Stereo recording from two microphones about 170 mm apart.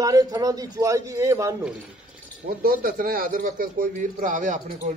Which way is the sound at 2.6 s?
60° right (ahead or behind).